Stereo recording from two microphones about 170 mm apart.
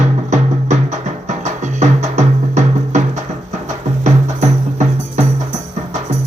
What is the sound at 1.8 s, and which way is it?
Music, 45° right (ahead or behind).